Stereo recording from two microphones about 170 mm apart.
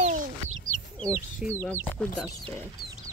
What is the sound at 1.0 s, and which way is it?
Speech, 15° right (ahead or behind).